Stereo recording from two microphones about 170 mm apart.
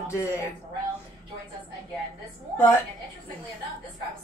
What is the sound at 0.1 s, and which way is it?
Speech, 15° left (ahead or behind).